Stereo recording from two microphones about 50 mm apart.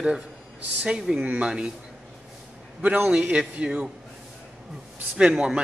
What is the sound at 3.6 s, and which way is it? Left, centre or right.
Speech, right.